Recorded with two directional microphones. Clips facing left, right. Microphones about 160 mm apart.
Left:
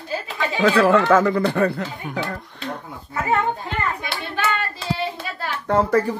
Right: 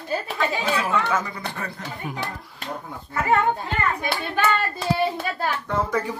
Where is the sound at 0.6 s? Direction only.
80° left; by 1.8 s 65° left (ahead or behind).